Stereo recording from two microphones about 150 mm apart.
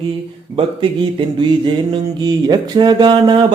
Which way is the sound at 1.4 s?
30° right (ahead or behind).